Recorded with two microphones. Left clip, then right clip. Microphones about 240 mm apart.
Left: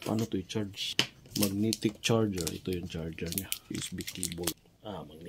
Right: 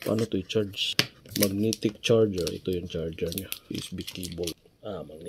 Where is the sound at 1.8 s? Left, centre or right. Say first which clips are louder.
Right 8 dB; centre.